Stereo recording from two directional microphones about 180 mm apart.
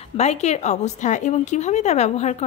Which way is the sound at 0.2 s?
35° left (ahead or behind).